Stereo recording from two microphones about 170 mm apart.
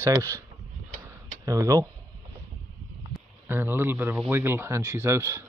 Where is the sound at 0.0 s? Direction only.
20° right (ahead or behind).